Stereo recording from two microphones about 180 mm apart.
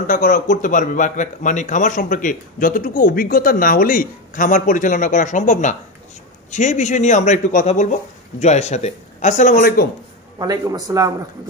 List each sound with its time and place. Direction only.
0.0 s a man's voice: 50° left (ahead or behind)
10.4 s a man's voice: 20° right (ahead or behind)